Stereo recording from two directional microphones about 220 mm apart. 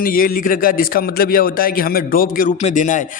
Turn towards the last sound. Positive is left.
turn(degrees=35)  # may be behind; listen again after turning